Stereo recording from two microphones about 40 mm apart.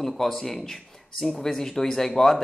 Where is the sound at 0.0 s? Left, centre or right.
Centre.